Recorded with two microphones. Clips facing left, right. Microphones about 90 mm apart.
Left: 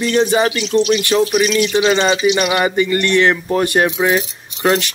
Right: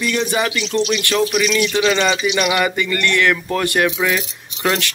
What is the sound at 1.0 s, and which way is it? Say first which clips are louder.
Speech: left 3 dB; 20° left (ahead or behind).